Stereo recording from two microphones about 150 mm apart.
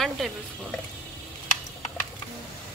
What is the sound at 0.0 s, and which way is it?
Speech, centre (ahead or behind).